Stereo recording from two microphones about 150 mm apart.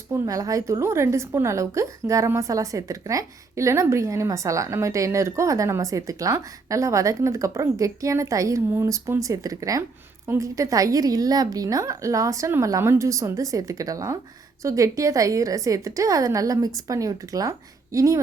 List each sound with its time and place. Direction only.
0.1 s a woman's voice: 20° right (ahead or behind)